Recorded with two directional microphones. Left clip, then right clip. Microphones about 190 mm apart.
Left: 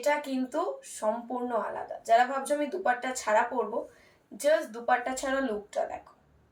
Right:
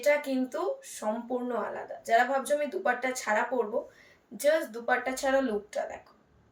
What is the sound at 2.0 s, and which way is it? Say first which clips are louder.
Speech: left 1 dB; 20° right (ahead or behind).